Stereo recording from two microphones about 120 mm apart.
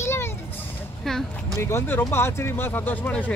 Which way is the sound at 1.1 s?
5° left (ahead or behind).